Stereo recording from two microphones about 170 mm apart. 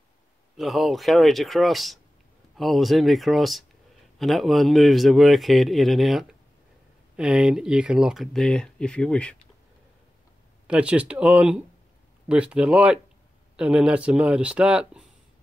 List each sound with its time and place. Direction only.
0.6 s speech: centre (ahead or behind)
10.7 s speech: 5° right (ahead or behind)